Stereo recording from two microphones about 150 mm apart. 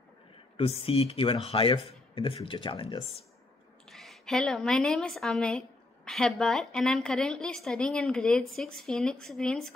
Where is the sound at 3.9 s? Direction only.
Centre (ahead or behind).